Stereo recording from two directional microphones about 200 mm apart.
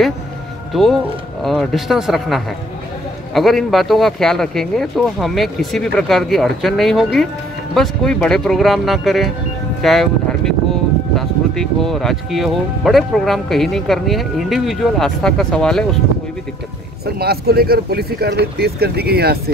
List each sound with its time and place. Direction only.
0.7 s speech: centre (ahead or behind)
9.8 s a sound: centre (ahead or behind)
11.1 s speech: centre (ahead or behind)
17.0 s speech: 50° right (ahead or behind)